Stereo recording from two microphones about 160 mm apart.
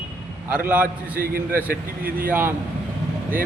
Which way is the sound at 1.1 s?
65° right (ahead or behind).